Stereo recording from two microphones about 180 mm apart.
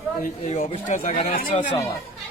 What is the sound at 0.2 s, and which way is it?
Speech, 45° left (ahead or behind).